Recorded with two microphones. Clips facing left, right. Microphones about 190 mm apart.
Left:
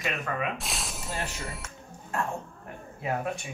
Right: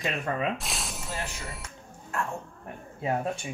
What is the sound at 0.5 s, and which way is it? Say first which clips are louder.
Speech: even; centre (ahead or behind).